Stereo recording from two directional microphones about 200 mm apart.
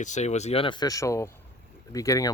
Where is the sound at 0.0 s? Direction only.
35° left (ahead or behind).